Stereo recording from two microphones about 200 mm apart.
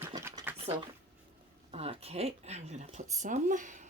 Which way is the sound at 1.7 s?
30° right (ahead or behind).